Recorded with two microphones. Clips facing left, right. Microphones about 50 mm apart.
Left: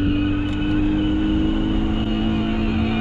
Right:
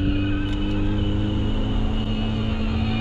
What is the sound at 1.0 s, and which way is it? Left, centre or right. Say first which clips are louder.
Vehicle: left 7 dB; left.